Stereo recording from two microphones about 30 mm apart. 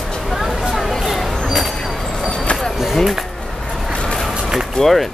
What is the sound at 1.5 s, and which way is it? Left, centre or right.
Vehicle, centre.